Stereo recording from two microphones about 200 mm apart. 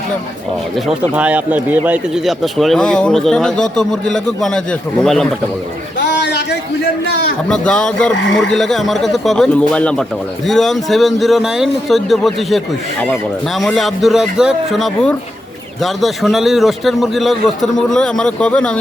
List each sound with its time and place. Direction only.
0.9 s speech: 5° right (ahead or behind)
6.0 s a sound: 60° left (ahead or behind)
7.0 s a man's voice: 55° left (ahead or behind)
7.4 s speech: 5° left (ahead or behind)